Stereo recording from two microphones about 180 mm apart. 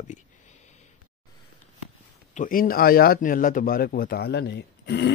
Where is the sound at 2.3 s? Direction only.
50° left (ahead or behind); by 5.1 s 70° left (ahead or behind).